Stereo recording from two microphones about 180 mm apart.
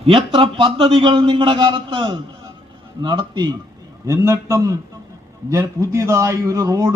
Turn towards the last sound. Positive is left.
turn(degrees=-20)  # may be behind; listen again after turning